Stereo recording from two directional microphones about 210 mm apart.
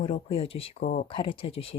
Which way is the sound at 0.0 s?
30° left (ahead or behind).